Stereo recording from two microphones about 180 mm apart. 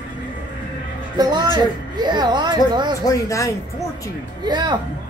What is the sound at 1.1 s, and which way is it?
Speech, 20° right (ahead or behind).